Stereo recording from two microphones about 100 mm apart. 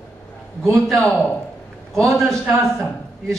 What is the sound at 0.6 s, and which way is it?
Speech, centre (ahead or behind).